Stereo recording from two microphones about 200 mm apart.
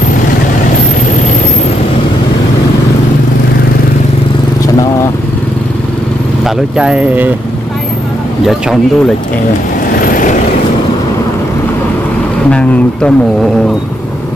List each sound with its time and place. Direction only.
6.4 s speech: 5° right (ahead or behind)
9.9 s vehicle: 45° left (ahead or behind)
12.4 s speech: 5° left (ahead or behind)